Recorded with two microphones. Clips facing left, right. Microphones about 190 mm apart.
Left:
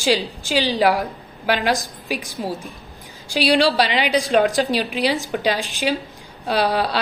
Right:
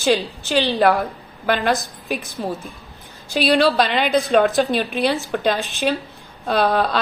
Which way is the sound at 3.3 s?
50° right (ahead or behind).